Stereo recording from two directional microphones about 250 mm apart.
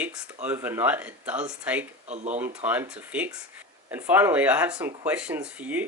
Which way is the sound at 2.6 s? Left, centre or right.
Centre.